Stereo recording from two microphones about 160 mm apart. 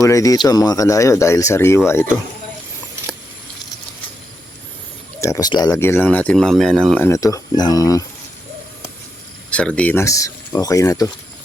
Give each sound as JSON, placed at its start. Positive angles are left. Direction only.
{"t": 0.0, "sound": "speech", "side_deg": 20}
{"t": 5.2, "sound": "speech", "side_deg": 20}
{"t": 5.8, "sound": "speech", "side_deg": 15}
{"t": 7.1, "sound": "speech", "side_deg": 20}
{"t": 9.5, "sound": "speech", "side_deg": 5}